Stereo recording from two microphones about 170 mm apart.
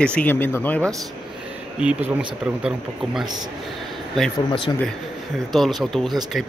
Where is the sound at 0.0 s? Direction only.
5° left (ahead or behind).